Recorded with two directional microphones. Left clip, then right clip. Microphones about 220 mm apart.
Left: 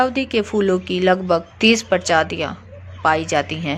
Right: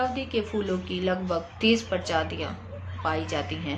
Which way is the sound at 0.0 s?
35° left (ahead or behind).